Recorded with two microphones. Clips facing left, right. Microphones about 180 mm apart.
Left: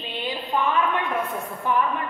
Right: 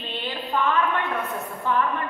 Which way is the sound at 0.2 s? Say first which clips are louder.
Left 1 dB; 15° left (ahead or behind).